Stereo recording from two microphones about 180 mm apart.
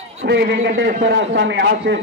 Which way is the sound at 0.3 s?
70° right (ahead or behind).